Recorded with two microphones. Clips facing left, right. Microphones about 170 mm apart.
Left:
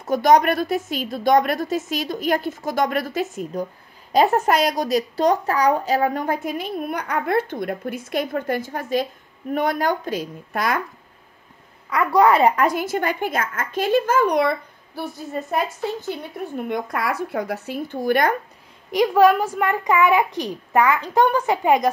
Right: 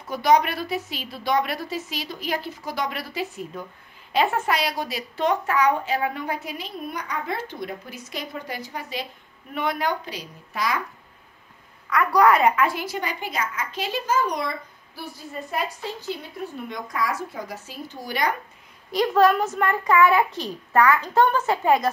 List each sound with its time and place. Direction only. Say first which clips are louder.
0.0 s a woman's voice: left 4 dB; 45° left (ahead or behind)
11.9 s a woman's voice: left 2 dB; 25° left (ahead or behind)
12.5 s a woman's voice: left 4 dB; 45° left (ahead or behind); by 14.5 s 60° left (ahead or behind)
16.1 s speech: left 3 dB; 55° left (ahead or behind)
18.9 s a child's voice: left 3 dB; 15° left (ahead or behind)